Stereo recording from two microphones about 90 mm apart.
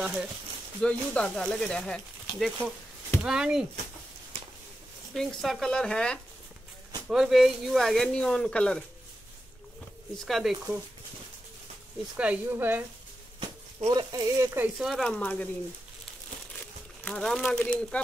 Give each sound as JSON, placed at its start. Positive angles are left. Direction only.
{"t": 0.0, "sound": "speech", "side_deg": -10}
{"t": 0.7, "sound": "speech", "side_deg": 10}
{"t": 3.2, "sound": "speech", "side_deg": -10}
{"t": 5.1, "sound": "speech", "side_deg": 5}
{"t": 7.1, "sound": "speech", "side_deg": -5}
{"t": 10.1, "sound": "speech", "side_deg": 0}
{"t": 12.2, "sound": "speech", "side_deg": -20}
{"t": 13.8, "sound": "speech", "side_deg": -55}
{"t": 14.4, "sound": "speech", "side_deg": -25}
{"t": 14.8, "sound": "speech", "side_deg": 0}
{"t": 15.0, "sound": "speech", "side_deg": 15}
{"t": 16.5, "sound": "speech", "side_deg": 10}